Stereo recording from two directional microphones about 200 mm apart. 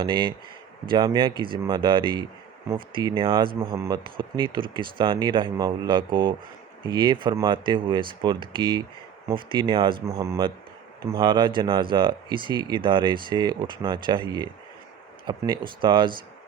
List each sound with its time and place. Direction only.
0.0 s speech: 25° right (ahead or behind)